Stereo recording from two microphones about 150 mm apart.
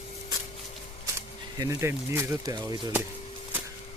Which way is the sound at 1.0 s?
20° right (ahead or behind).